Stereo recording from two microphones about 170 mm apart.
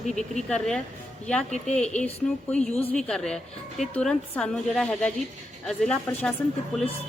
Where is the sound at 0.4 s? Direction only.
5° left (ahead or behind).